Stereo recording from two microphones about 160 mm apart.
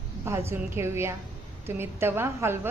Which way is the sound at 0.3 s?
15° right (ahead or behind).